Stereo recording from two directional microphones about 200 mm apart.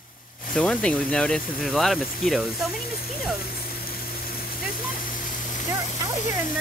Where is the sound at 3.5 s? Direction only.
50° left (ahead or behind).